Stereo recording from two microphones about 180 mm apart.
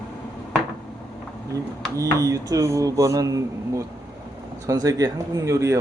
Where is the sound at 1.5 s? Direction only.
20° right (ahead or behind).